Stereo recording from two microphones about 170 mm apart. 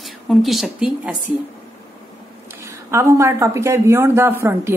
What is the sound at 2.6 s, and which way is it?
Speech, 15° right (ahead or behind).